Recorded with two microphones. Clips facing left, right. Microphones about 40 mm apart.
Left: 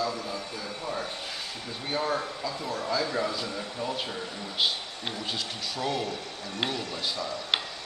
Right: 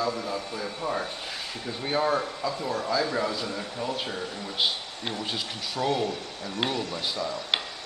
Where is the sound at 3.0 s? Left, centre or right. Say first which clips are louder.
Right 2 dB; centre.